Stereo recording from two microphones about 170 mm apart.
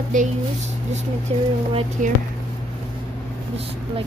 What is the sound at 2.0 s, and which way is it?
Speech, 45° right (ahead or behind).